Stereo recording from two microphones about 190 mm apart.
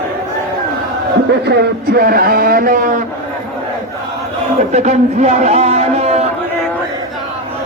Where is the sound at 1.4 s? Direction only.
55° right (ahead or behind).